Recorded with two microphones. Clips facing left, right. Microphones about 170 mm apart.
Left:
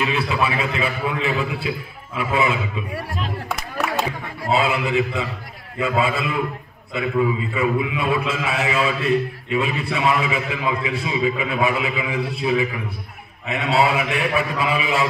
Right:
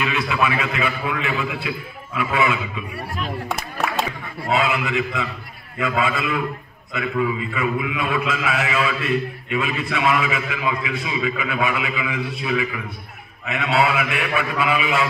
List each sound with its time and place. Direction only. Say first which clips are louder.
0.0 s a man's voice: even; 30° left (ahead or behind)
4.5 s a man's voice: left 1 dB; 30° left (ahead or behind)